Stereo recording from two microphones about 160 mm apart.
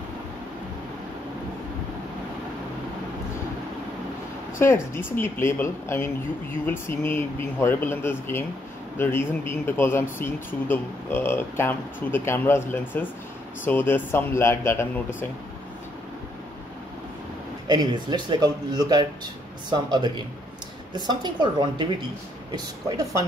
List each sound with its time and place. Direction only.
4.9 s speech: 15° left (ahead or behind)
17.6 s a man's voice: 25° right (ahead or behind)